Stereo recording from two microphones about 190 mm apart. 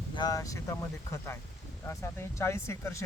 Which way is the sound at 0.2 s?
20° left (ahead or behind).